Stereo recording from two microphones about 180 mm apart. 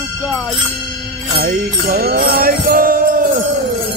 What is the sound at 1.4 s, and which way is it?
Music, 50° right (ahead or behind).